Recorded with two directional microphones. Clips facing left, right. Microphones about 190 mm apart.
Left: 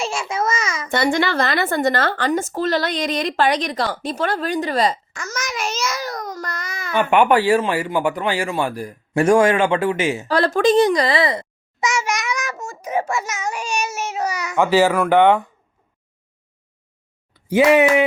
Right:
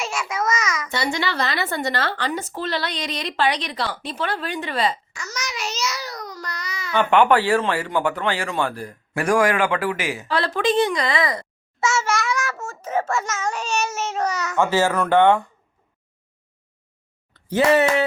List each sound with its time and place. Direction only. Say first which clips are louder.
0.0 s a sound: left 3 dB; 30° left (ahead or behind)
0.9 s speech: left 9 dB; 50° left (ahead or behind)
7.1 s a child's voice: left 2 dB; 15° left (ahead or behind)
9.1 s a man's voice: left 5 dB; 25° left (ahead or behind)
10.2 s a child's voice: left 5 dB; 45° left (ahead or behind); by 15.4 s 15° left (ahead or behind)
17.3 s speech: left 4 dB; 10° left (ahead or behind)